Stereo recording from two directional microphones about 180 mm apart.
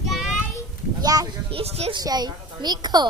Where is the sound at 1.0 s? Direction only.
20° right (ahead or behind).